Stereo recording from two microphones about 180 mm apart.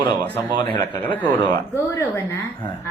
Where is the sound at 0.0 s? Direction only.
25° left (ahead or behind).